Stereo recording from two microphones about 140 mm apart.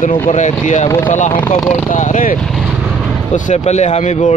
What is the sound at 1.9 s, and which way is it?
Speech, 65° left (ahead or behind).